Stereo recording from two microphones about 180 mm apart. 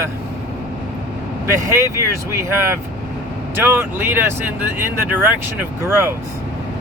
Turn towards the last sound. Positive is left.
turn(degrees=-15)  # may be behind; listen again after turning